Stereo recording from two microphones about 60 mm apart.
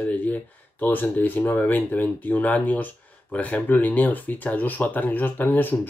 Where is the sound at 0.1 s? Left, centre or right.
Left.